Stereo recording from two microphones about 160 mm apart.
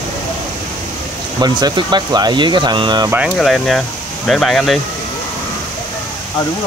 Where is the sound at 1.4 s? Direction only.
25° right (ahead or behind).